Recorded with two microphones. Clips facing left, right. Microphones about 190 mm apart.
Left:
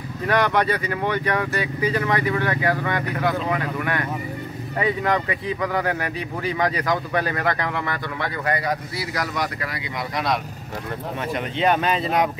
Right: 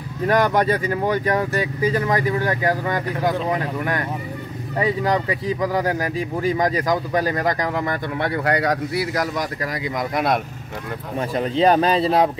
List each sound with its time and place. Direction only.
0.3 s speech: 40° right (ahead or behind)
8.5 s a man's voice: 75° right (ahead or behind); by 10.4 s 50° right (ahead or behind)
11.1 s speech: 35° right (ahead or behind)